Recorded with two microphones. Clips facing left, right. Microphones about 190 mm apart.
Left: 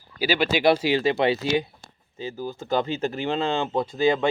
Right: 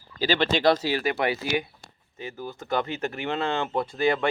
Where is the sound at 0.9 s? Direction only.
25° left (ahead or behind).